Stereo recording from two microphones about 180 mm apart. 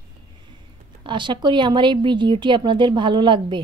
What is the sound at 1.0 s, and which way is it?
A woman's voice, 25° right (ahead or behind).